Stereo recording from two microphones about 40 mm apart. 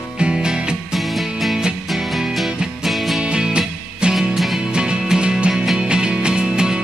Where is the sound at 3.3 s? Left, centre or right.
Right.